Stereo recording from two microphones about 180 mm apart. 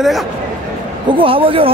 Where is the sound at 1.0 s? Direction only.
30° right (ahead or behind).